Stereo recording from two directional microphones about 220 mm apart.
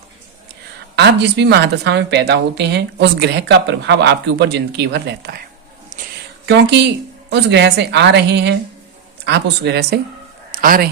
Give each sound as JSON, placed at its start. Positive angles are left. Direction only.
{"t": 0.9, "sound": "a woman's voice", "side_deg": -50}
{"t": 5.9, "sound": "a sound", "side_deg": -35}
{"t": 6.4, "sound": "a woman's voice", "side_deg": -50}